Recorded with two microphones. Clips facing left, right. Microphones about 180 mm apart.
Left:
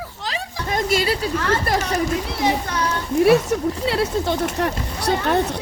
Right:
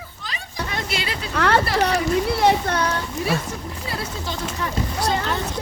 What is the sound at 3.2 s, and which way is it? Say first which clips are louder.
Speech: left 13 dB; 70° left (ahead or behind).